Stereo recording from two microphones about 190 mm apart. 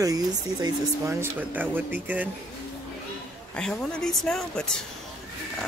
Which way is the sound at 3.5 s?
5° left (ahead or behind).